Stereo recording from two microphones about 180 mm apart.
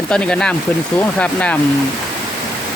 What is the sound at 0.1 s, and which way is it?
Speech, 5° left (ahead or behind).